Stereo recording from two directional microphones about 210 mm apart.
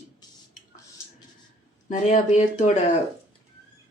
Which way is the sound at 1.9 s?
35° left (ahead or behind).